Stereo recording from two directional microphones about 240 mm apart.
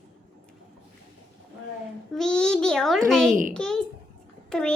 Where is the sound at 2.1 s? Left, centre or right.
Centre.